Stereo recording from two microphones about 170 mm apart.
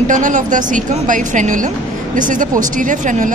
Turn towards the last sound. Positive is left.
turn(degrees=-50)  # may be behind; listen again after turning